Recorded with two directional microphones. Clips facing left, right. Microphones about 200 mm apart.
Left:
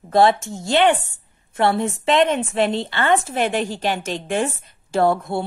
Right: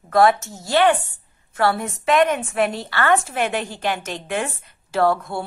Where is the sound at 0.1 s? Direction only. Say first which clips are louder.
Even; 30° left (ahead or behind).